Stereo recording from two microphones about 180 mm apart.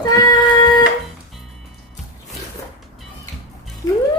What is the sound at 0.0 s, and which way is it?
Printer, 20° left (ahead or behind).